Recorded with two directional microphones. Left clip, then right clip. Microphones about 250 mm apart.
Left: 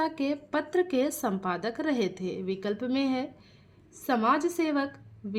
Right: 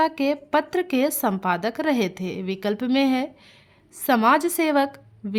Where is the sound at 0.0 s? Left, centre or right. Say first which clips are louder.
Right 8 dB; right.